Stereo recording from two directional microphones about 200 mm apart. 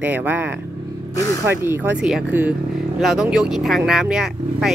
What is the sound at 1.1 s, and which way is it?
Speech, 15° left (ahead or behind).